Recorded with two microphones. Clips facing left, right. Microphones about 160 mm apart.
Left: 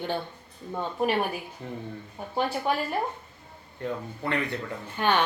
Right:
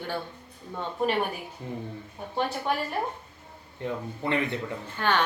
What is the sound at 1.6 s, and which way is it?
Speech, 15° right (ahead or behind).